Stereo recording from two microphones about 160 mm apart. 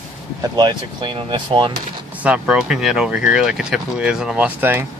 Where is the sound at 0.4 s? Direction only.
30° right (ahead or behind).